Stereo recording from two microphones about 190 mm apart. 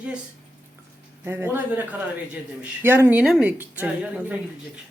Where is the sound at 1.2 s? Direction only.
10° right (ahead or behind).